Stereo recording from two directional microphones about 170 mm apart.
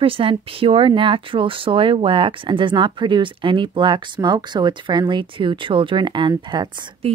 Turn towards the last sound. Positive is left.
turn(degrees=-25)  # may be behind; listen again after turning